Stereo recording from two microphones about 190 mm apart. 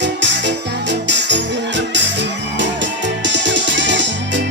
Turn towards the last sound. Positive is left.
turn(degrees=-70)  # may be behind; listen again after turning